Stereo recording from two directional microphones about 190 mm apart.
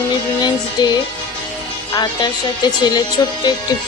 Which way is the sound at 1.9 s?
20° left (ahead or behind).